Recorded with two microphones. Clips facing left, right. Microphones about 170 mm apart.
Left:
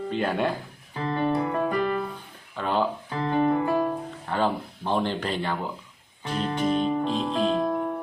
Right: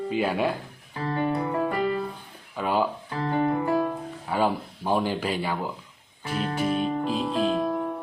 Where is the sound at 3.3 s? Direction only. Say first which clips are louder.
Left 2 dB; 20° left (ahead or behind).